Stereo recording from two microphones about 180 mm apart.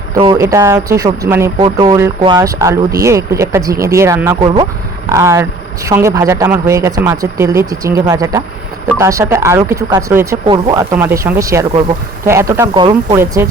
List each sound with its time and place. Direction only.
0.3 s speech: 15° right (ahead or behind)
10.4 s speech: 25° right (ahead or behind)
10.9 s speech: 15° right (ahead or behind)
13.1 s speech: 15° right (ahead or behind)